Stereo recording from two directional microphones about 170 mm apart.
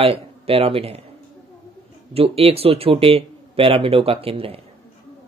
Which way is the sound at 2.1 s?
35° right (ahead or behind).